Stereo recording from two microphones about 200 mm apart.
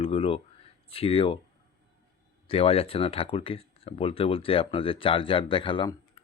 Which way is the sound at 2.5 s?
30° left (ahead or behind).